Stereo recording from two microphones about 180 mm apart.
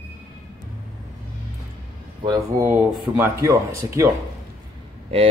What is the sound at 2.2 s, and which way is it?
A man's voice, 20° right (ahead or behind).